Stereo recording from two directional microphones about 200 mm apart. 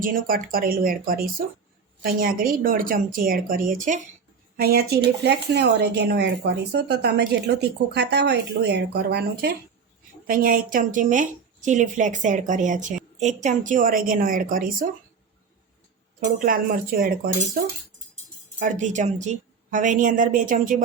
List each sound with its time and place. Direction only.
0.0 s a woman's voice: 45° right (ahead or behind)
16.4 s speech: 45° right (ahead or behind)
18.6 s a woman's voice: 40° right (ahead or behind)